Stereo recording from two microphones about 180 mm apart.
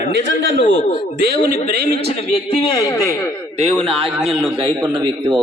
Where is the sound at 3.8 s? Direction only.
30° right (ahead or behind).